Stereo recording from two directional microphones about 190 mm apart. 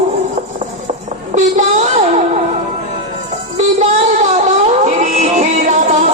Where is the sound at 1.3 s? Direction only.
40° right (ahead or behind).